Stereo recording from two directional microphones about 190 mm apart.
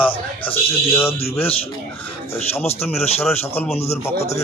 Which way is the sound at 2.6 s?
30° left (ahead or behind).